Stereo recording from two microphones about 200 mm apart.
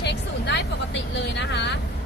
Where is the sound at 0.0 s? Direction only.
60° left (ahead or behind).